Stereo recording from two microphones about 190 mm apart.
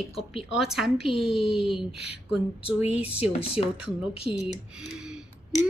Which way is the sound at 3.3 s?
30° left (ahead or behind).